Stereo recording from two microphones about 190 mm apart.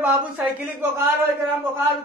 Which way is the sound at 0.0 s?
10° right (ahead or behind).